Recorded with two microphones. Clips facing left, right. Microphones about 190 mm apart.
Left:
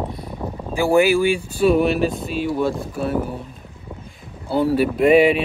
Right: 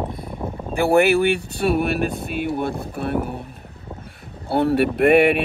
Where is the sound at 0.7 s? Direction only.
60° right (ahead or behind).